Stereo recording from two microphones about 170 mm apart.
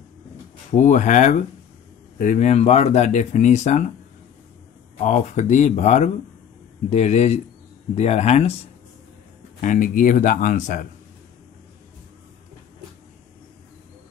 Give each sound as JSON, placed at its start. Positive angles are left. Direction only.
{"t": 0.7, "sound": "speech", "side_deg": 45}
{"t": 4.9, "sound": "speech", "side_deg": 45}
{"t": 9.6, "sound": "speech", "side_deg": 50}